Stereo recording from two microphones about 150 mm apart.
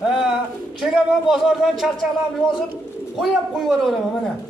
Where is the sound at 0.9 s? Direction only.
5° right (ahead or behind).